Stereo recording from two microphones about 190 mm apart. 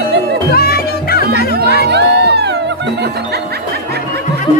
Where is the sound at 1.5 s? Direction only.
55° right (ahead or behind).